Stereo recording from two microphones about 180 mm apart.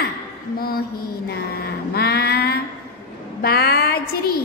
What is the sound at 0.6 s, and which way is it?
Mantra, 55° left (ahead or behind).